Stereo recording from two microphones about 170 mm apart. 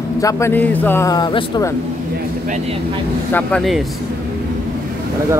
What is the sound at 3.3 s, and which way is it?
Speech, 5° left (ahead or behind).